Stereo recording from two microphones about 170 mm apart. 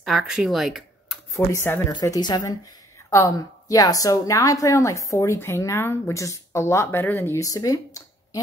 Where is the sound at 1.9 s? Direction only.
25° left (ahead or behind).